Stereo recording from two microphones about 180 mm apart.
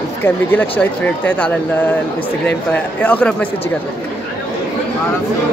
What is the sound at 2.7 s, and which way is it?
Speech, 10° left (ahead or behind).